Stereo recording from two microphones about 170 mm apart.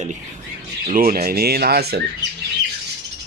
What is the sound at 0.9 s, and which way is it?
Speech, 55° right (ahead or behind).